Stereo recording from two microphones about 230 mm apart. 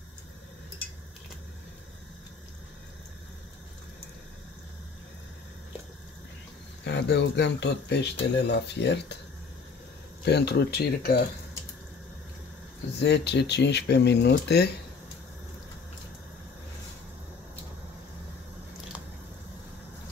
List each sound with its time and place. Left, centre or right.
6.8 s speech: left
10.2 s speech: left
13.0 s speech: left